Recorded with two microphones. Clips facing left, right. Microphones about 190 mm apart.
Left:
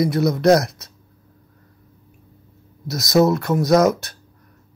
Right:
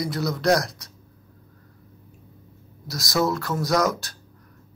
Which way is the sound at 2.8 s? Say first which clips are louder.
Left 8 dB; 20° left (ahead or behind).